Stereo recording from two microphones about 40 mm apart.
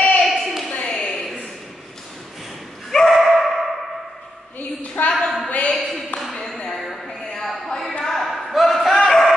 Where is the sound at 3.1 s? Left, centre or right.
Centre.